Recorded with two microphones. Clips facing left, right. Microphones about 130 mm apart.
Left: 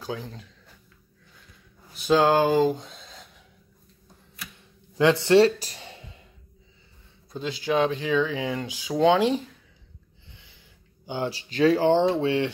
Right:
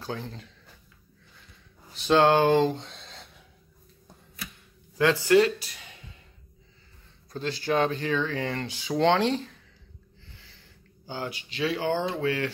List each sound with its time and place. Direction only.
0.0 s speech: 5° left (ahead or behind)
2.0 s speech: 5° left (ahead or behind)
4.9 s speech: 20° left (ahead or behind)
5.6 s a sound: 35° left (ahead or behind)
7.3 s speech: 5° left (ahead or behind)
10.3 s a sound: 20° left (ahead or behind)
11.2 s speech: 35° left (ahead or behind)
11.9 s speech: 25° left (ahead or behind)